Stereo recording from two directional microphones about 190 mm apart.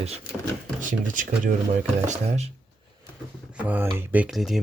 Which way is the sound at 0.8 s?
45° right (ahead or behind).